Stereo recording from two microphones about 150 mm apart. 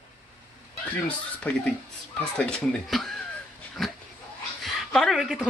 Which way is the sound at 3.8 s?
Centre (ahead or behind).